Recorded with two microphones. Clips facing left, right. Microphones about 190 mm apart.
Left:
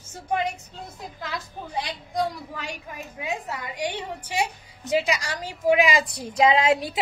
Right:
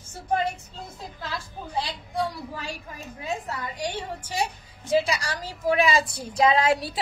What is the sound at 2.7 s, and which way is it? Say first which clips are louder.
A woman's voice: left 1 dB; 15° left (ahead or behind).